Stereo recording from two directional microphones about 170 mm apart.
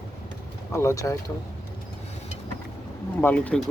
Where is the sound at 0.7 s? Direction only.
15° left (ahead or behind).